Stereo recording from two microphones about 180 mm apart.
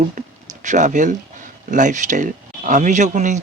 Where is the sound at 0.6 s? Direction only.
45° right (ahead or behind).